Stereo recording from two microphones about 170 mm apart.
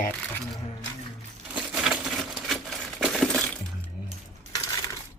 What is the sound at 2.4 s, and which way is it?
Crushing, centre (ahead or behind).